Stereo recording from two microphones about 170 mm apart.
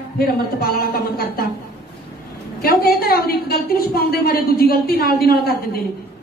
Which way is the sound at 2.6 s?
60° left (ahead or behind).